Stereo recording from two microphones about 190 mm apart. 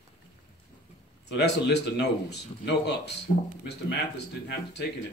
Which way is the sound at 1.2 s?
60° left (ahead or behind).